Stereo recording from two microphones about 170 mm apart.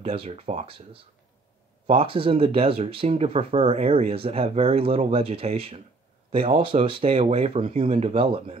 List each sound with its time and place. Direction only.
0.0 s speech: 35° right (ahead or behind)
1.9 s speech: 35° right (ahead or behind)